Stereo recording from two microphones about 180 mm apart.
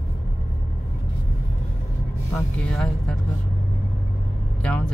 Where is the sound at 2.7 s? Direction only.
5° left (ahead or behind).